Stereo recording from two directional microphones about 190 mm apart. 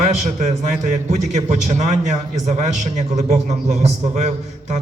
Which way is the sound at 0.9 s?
40° right (ahead or behind).